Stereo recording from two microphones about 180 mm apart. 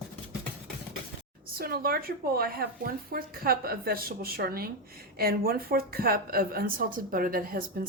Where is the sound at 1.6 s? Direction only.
55° right (ahead or behind).